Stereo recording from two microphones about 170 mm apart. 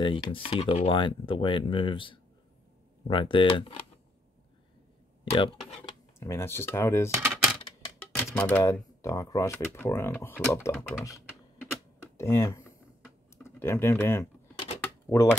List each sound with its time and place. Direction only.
0.0 s speech: 30° left (ahead or behind)
5.2 s speech: 35° left (ahead or behind)
6.1 s speech: 15° left (ahead or behind)
7.2 s a sound: 15° right (ahead or behind)
8.3 s speech: 10° left (ahead or behind)
12.2 s speech: 15° left (ahead or behind)